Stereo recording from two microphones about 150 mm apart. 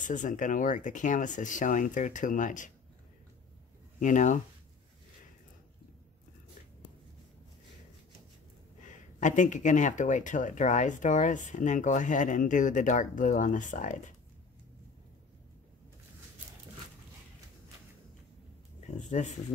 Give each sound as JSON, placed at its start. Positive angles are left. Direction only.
{"t": 0.0, "sound": "speech", "side_deg": 60}
{"t": 4.0, "sound": "speech", "side_deg": 55}
{"t": 8.8, "sound": "speech", "side_deg": 55}
{"t": 18.8, "sound": "speech", "side_deg": 55}